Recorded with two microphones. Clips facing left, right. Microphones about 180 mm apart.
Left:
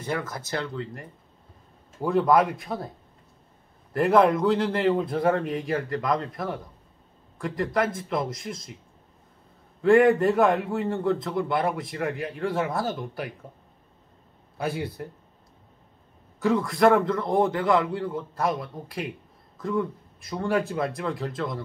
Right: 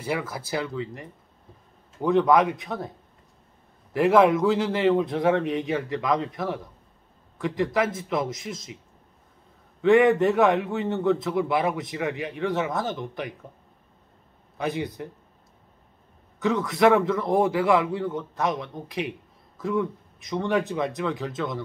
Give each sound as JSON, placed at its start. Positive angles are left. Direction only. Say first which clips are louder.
{"t": 0.0, "sound": "a man's voice", "louder": "right 1 dB", "side_deg": -10}
{"t": 3.9, "sound": "a man's voice", "louder": "right 1 dB", "side_deg": 0}
{"t": 9.8, "sound": "a man's voice", "louder": "even", "side_deg": 0}
{"t": 14.6, "sound": "a man's voice", "louder": "right 1 dB", "side_deg": 5}
{"t": 16.3, "sound": "a man's voice", "louder": "even", "side_deg": 0}